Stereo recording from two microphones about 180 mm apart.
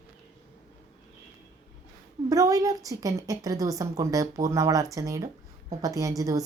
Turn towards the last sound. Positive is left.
turn(degrees=-20)  # may be behind; listen again after turning